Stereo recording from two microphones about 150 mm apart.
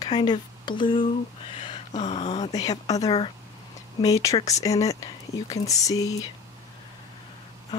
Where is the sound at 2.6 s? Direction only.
25° left (ahead or behind).